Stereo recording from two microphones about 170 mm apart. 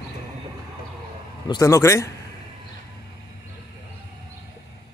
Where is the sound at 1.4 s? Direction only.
20° left (ahead or behind).